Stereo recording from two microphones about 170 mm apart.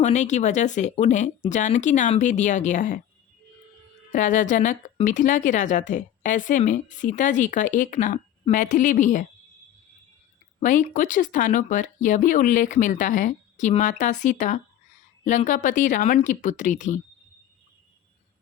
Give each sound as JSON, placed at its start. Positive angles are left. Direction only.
{"t": 0.0, "sound": "a woman's voice", "side_deg": 45}
{"t": 4.1, "sound": "a woman's voice", "side_deg": 50}
{"t": 10.6, "sound": "a woman's voice", "side_deg": 50}